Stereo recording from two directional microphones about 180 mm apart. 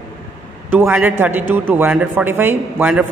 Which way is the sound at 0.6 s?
10° right (ahead or behind).